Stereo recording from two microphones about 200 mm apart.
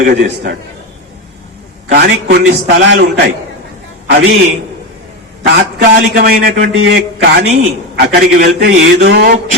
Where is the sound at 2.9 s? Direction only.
55° right (ahead or behind).